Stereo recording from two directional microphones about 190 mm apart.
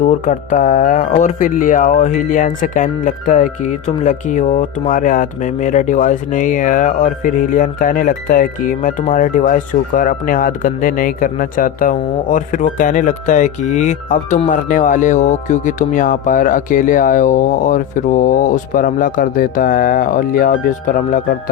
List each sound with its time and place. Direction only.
0.0 s speech: 35° left (ahead or behind)